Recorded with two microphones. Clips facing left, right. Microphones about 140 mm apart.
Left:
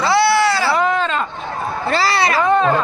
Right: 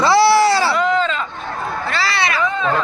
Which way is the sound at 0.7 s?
50° left (ahead or behind).